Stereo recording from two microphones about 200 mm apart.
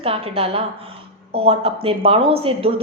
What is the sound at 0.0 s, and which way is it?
Speech, 30° right (ahead or behind).